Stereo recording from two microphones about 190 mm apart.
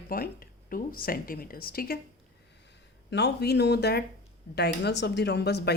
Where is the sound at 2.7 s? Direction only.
65° left (ahead or behind).